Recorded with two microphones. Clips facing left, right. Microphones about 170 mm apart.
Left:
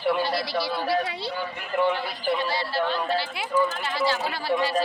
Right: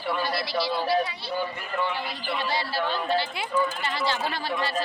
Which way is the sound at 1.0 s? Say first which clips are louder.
Left 2 dB; 75° left (ahead or behind).